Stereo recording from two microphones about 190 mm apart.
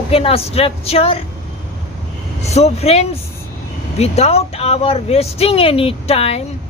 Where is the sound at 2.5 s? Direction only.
35° left (ahead or behind).